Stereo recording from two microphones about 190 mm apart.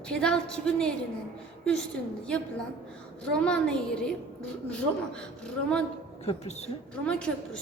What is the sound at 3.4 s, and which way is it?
A woman's voice, 5° left (ahead or behind).